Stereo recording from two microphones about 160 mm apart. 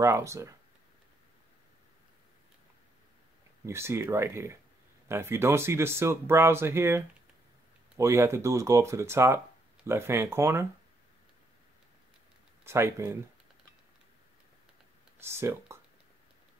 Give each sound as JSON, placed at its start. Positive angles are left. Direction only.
{"t": 0.0, "sound": "speech", "side_deg": -20}
{"t": 3.6, "sound": "speech", "side_deg": -15}
{"t": 12.6, "sound": "speech", "side_deg": -15}
{"t": 15.1, "sound": "speech", "side_deg": -15}